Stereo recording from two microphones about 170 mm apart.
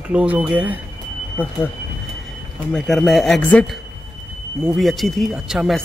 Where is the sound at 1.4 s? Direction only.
10° left (ahead or behind).